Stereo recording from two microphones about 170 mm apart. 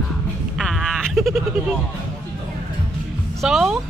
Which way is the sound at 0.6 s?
Centre (ahead or behind).